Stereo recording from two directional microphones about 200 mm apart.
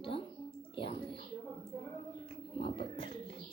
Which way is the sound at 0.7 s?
25° left (ahead or behind).